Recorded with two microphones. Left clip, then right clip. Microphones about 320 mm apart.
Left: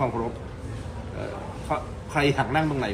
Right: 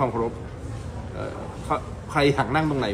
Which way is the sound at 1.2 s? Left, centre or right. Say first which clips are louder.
Right 1 dB; centre.